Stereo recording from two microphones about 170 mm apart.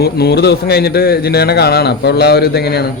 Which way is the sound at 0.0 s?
70° left (ahead or behind).